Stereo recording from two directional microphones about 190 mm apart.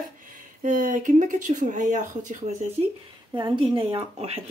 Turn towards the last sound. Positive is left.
turn(degrees=-35)  # may be behind; listen again after turning